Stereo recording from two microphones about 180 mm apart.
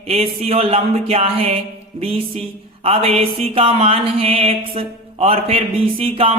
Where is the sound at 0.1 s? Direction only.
35° right (ahead or behind).